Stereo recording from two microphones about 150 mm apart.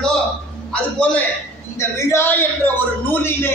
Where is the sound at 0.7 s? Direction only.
5° left (ahead or behind).